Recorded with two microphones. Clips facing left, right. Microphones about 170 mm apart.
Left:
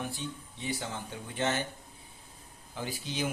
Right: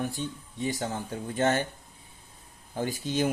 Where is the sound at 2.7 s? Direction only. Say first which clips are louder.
Right 7 dB; 45° right (ahead or behind).